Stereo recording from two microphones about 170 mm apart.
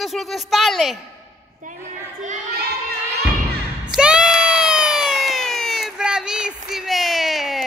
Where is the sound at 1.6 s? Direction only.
50° right (ahead or behind).